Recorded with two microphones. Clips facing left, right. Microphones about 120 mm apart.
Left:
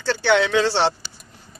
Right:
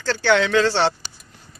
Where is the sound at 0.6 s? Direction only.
25° left (ahead or behind).